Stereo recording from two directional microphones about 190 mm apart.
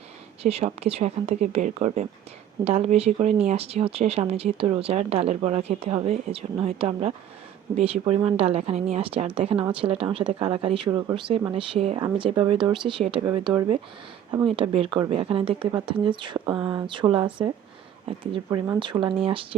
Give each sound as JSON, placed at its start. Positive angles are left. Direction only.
{"t": 0.4, "sound": "a woman's voice", "side_deg": -35}